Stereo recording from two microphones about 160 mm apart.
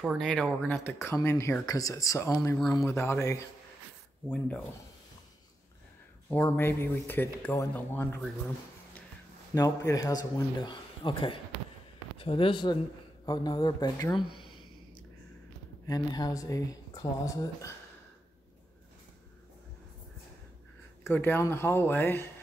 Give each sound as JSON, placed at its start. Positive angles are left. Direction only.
{"t": 0.0, "sound": "speech", "side_deg": 0}
{"t": 6.2, "sound": "speech", "side_deg": 10}
{"t": 9.6, "sound": "a man's voice", "side_deg": 20}
{"t": 14.3, "sound": "a sound", "side_deg": 30}
{"t": 15.9, "sound": "a man's voice", "side_deg": 25}
{"t": 21.0, "sound": "speech", "side_deg": 15}